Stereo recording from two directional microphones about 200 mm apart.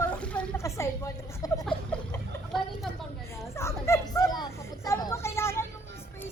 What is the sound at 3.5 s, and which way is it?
Children playing, 15° left (ahead or behind).